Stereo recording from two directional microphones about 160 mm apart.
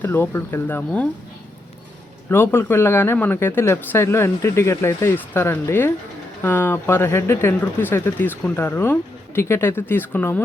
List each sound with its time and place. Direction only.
0.0 s speech: 15° left (ahead or behind)
2.3 s speech: 15° left (ahead or behind)